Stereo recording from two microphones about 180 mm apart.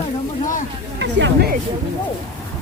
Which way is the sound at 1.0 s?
75° right (ahead or behind).